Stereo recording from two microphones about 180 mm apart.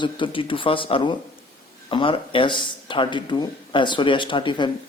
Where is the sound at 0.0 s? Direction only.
30° left (ahead or behind).